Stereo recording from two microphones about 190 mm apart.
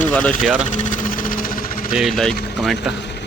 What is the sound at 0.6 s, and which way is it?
Sewing machine, 40° left (ahead or behind).